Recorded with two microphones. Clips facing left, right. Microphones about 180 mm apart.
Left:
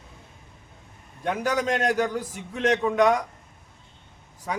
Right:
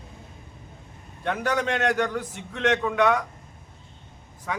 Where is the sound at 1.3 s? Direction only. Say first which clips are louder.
Left 1 dB; 10° left (ahead or behind).